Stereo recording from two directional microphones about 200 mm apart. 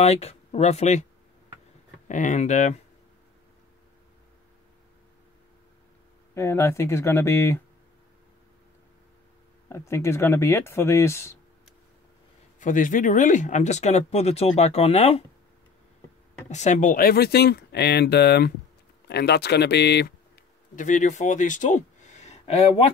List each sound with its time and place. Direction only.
0.0 s speech: 30° left (ahead or behind)
2.0 s speech: 40° left (ahead or behind)
6.3 s speech: 15° left (ahead or behind)
9.7 s speech: 15° left (ahead or behind)
12.5 s speech: 40° left (ahead or behind)
16.4 s speech: 35° left (ahead or behind); by 20.2 s 55° left (ahead or behind)
20.7 s speech: 40° left (ahead or behind)